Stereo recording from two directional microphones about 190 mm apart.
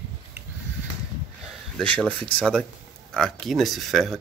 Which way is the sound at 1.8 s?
5° left (ahead or behind).